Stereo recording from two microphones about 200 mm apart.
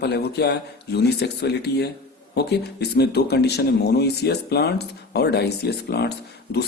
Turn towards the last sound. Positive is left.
turn(degrees=55)  # may be behind; listen again after turning